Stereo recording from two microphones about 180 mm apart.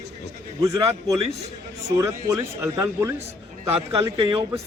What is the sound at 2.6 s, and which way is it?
A man's voice, 15° right (ahead or behind).